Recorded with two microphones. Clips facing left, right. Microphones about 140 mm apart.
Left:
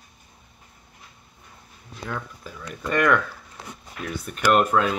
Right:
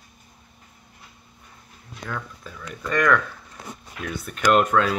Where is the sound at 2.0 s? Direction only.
10° left (ahead or behind).